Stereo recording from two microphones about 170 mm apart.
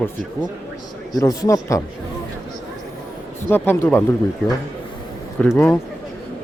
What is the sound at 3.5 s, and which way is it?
Speech, 15° left (ahead or behind).